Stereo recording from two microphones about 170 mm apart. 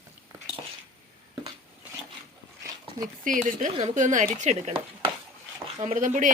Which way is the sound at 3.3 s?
50° right (ahead or behind).